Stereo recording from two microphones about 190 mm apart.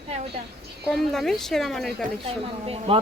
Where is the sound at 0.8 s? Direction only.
Centre (ahead or behind).